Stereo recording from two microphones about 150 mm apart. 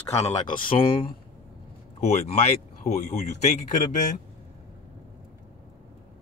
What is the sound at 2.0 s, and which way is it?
Speech, 50° left (ahead or behind).